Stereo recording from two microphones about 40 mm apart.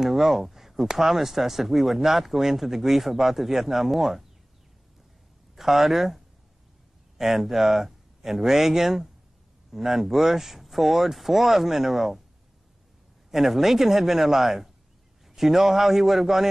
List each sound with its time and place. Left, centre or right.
0.0 s speech: centre
5.6 s speech: centre
13.3 s speech: centre